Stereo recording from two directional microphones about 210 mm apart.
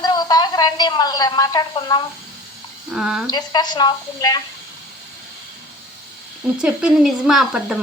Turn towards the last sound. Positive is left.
turn(degrees=-5)  # may be behind; listen again after turning